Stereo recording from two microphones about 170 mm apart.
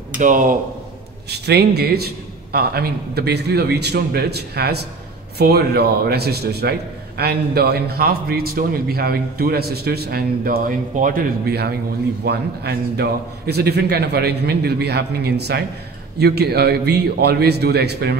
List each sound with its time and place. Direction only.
0.2 s speech: 50° right (ahead or behind)
1.3 s a man's voice: 75° right (ahead or behind)